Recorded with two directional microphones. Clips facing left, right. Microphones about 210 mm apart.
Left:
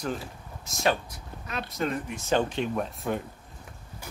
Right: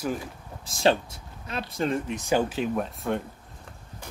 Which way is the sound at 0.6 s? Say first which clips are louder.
Right 4 dB; 30° right (ahead or behind).